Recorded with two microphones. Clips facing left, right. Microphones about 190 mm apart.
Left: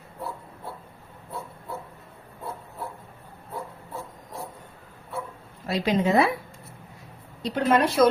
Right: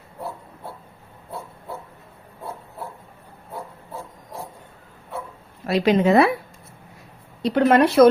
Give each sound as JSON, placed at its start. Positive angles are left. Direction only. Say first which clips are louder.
{"t": 5.6, "sound": "a woman's voice", "louder": "right 6 dB", "side_deg": -65}
{"t": 7.4, "sound": "a woman's voice", "louder": "right 6 dB", "side_deg": -65}